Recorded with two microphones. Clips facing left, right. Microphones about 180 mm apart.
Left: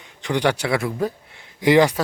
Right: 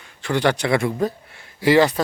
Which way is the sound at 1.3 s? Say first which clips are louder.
Even; 20° left (ahead or behind).